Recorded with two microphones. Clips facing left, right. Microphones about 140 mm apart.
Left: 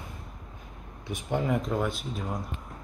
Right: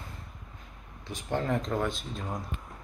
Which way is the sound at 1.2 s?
10° left (ahead or behind).